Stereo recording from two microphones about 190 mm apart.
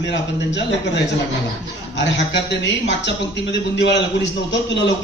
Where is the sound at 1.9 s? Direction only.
70° left (ahead or behind).